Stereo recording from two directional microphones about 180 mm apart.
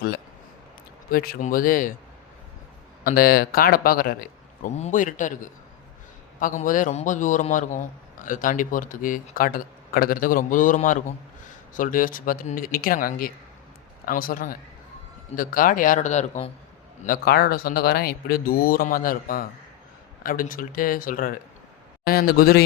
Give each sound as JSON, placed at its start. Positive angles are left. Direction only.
{"t": 1.1, "sound": "a man's voice", "side_deg": 55}
{"t": 3.0, "sound": "a man's voice", "side_deg": 55}
{"t": 17.0, "sound": "a man's voice", "side_deg": 55}